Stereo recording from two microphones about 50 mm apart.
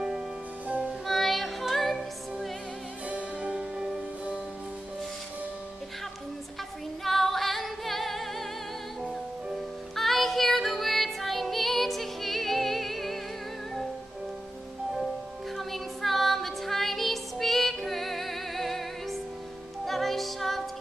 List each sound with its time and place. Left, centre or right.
0.7 s music: right
1.0 s music: centre
3.1 s music: right
3.5 s music: centre
7.1 s music: centre
9.9 s music: centre
15.5 s music: centre